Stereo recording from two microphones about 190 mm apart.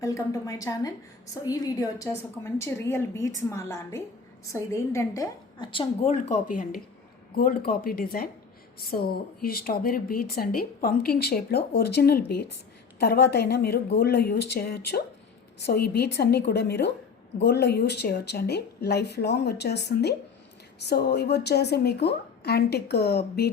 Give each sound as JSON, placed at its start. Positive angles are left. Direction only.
{"t": 0.0, "sound": "a woman's voice", "side_deg": 15}